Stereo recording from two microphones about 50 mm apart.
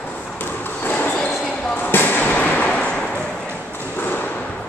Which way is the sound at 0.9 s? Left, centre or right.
Left.